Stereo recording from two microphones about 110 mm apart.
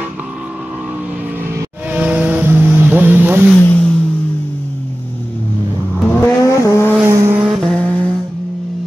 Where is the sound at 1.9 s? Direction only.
15° right (ahead or behind).